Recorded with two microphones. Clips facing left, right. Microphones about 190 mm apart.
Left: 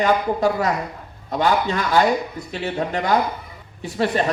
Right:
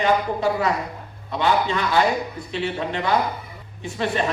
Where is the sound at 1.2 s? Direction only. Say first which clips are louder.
Left 1 dB; 40° left (ahead or behind).